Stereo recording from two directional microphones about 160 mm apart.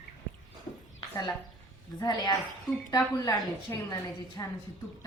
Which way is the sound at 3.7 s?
20° left (ahead or behind).